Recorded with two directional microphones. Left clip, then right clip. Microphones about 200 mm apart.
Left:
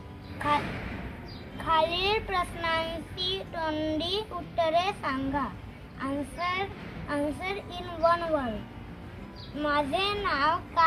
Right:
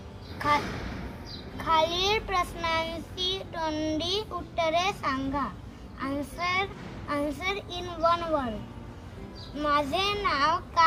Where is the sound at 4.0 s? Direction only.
20° right (ahead or behind).